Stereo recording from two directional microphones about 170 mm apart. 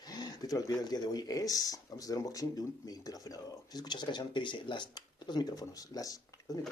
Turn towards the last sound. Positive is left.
turn(degrees=20)  # may be behind; listen again after turning